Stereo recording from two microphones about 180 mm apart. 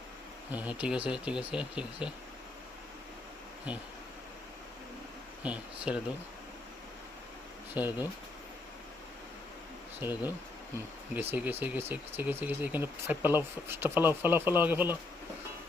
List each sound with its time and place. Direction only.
0.8 s speech: 5° right (ahead or behind)
3.7 s speech: 5° right (ahead or behind)
5.4 s speech: 5° right (ahead or behind)
7.8 s speech: 10° right (ahead or behind)
10.0 s speech: 10° right (ahead or behind)